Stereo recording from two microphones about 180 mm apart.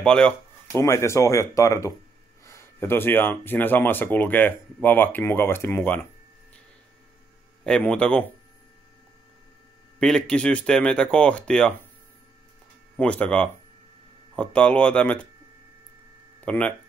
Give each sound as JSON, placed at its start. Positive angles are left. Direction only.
{"t": 0.0, "sound": "speech", "side_deg": 5}
{"t": 0.7, "sound": "speech", "side_deg": 15}
{"t": 7.6, "sound": "speech", "side_deg": 5}
{"t": 9.9, "sound": "speech", "side_deg": 5}
{"t": 12.9, "sound": "speech", "side_deg": 5}
{"t": 16.4, "sound": "speech", "side_deg": 5}